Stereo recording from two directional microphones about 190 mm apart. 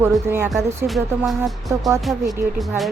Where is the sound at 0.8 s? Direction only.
Centre (ahead or behind).